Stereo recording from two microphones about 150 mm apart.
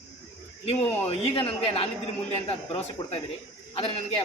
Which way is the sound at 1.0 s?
40° left (ahead or behind).